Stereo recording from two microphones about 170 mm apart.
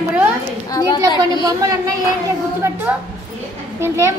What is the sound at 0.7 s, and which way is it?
Speech, 25° left (ahead or behind).